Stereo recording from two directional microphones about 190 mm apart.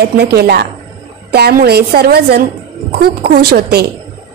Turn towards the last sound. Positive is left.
turn(degrees=-55)  # may be behind; listen again after turning